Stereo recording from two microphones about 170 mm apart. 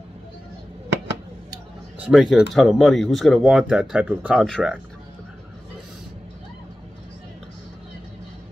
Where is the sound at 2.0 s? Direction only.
5° right (ahead or behind).